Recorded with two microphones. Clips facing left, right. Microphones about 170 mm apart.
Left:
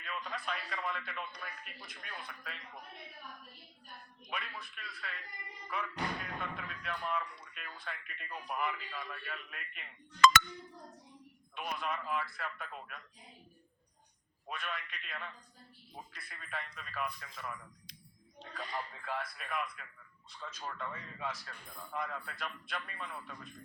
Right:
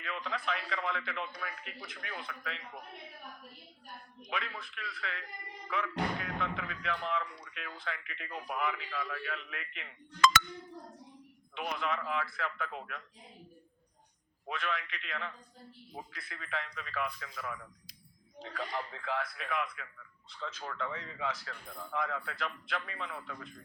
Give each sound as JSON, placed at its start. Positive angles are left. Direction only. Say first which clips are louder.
{"t": 0.0, "sound": "speech", "louder": "right 4 dB", "side_deg": -65}
{"t": 4.3, "sound": "speech", "louder": "right 4 dB", "side_deg": -70}
{"t": 10.2, "sound": "chink", "louder": "left 2 dB", "side_deg": 60}
{"t": 11.5, "sound": "speech", "louder": "right 3 dB", "side_deg": -65}
{"t": 14.4, "sound": "speech", "louder": "right 5 dB", "side_deg": -80}